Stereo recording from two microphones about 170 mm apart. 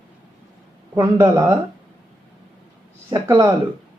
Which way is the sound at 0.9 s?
25° right (ahead or behind).